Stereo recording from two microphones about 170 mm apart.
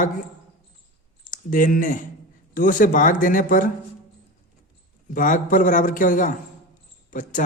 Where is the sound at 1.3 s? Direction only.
50° left (ahead or behind).